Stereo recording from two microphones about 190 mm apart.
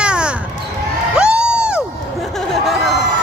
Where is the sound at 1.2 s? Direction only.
5° right (ahead or behind).